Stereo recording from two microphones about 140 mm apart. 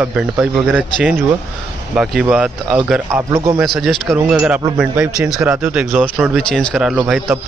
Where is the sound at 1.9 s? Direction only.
5° right (ahead or behind).